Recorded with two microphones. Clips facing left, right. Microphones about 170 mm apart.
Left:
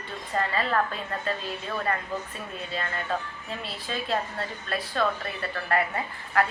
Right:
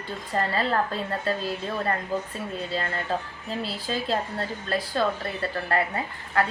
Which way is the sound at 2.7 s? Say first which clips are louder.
Right 1 dB; 30° right (ahead or behind).